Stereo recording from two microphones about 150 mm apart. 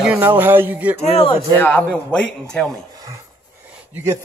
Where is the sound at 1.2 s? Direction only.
15° left (ahead or behind).